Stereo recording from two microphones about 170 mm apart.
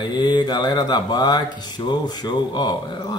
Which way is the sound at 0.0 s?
25° left (ahead or behind).